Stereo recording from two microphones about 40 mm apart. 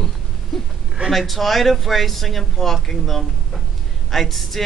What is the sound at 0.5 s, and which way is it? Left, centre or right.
Speech, centre.